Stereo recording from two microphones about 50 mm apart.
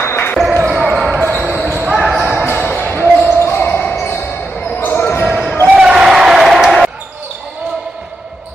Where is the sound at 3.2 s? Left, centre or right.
Left.